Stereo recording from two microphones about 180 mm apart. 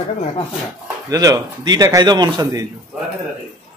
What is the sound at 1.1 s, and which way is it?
A man's voice, 20° right (ahead or behind).